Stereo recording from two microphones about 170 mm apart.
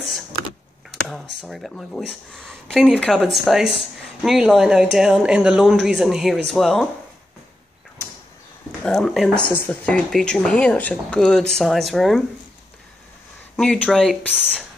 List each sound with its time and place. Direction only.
1.0 s speech: centre (ahead or behind)
8.8 s speech: 5° left (ahead or behind)
13.6 s speech: 5° left (ahead or behind)